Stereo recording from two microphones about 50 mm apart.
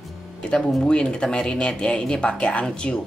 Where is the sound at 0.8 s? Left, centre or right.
Centre.